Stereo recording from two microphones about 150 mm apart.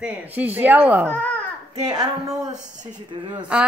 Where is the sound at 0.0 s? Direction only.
10° right (ahead or behind).